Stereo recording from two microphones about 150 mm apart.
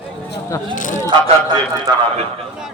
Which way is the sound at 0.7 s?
60° left (ahead or behind).